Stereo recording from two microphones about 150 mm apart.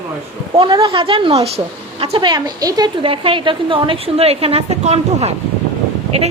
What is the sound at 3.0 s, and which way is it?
A woman's voice, 35° right (ahead or behind).